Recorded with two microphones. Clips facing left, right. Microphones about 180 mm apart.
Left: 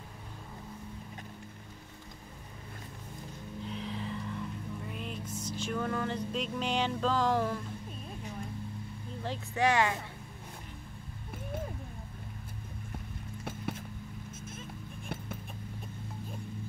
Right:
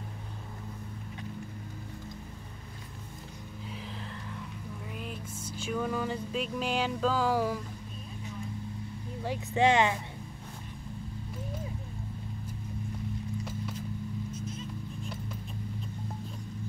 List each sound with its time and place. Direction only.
3.6 s music: centre (ahead or behind)
5.3 s music: 30° right (ahead or behind)
5.7 s music: 5° right (ahead or behind)
9.5 s speech: 20° right (ahead or behind)
13.4 s zipper: 55° left (ahead or behind)
14.3 s vehicle: 50° left (ahead or behind)